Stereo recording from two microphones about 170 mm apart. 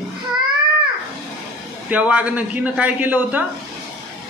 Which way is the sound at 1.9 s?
10° right (ahead or behind).